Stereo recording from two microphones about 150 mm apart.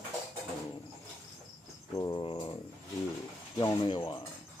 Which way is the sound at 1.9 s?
30° left (ahead or behind).